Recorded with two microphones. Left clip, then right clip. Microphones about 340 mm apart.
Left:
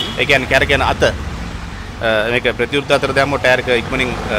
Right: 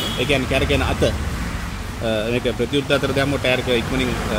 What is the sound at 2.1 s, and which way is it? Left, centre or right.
Speech, centre.